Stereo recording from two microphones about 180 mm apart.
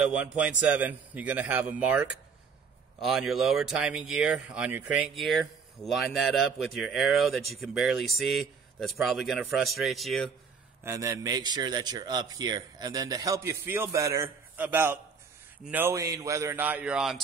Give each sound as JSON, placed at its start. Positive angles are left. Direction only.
{"t": 0.2, "sound": "a man's voice", "side_deg": -5}
{"t": 10.8, "sound": "a man's voice", "side_deg": -15}